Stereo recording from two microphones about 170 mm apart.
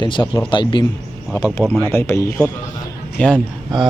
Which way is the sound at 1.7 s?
15° left (ahead or behind).